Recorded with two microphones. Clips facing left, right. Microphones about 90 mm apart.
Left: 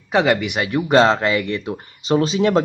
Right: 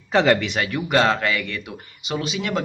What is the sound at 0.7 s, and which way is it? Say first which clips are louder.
Speech: left 6 dB; 30° left (ahead or behind).